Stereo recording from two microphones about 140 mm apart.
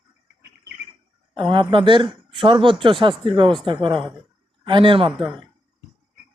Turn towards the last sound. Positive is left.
turn(degrees=-40)  # may be behind; listen again after turning